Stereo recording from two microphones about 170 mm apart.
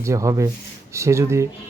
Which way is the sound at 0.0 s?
20° right (ahead or behind).